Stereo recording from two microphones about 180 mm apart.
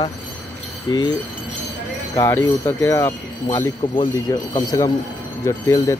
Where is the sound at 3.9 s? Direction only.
25° left (ahead or behind).